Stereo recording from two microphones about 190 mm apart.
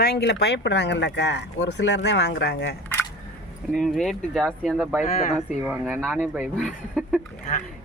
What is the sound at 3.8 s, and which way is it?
Speech, centre (ahead or behind).